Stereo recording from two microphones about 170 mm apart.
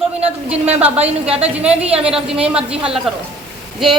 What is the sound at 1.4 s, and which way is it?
Speech, 10° right (ahead or behind).